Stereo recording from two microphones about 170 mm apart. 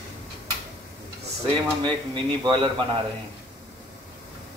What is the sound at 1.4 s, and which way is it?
Speech, 30° right (ahead or behind).